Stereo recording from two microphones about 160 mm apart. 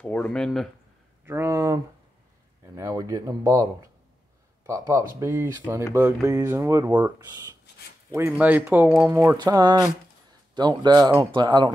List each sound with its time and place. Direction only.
0.0 s speech: 10° left (ahead or behind)
1.2 s speech: 15° right (ahead or behind)